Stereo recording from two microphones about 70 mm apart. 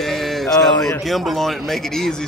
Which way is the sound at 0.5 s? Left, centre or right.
Left.